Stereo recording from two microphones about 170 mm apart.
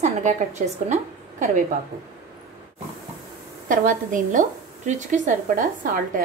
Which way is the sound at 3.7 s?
50° right (ahead or behind).